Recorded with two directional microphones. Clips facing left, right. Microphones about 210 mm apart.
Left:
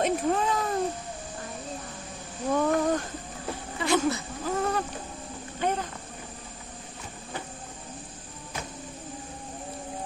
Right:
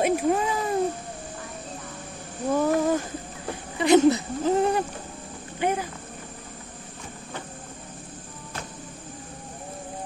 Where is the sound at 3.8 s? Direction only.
20° right (ahead or behind).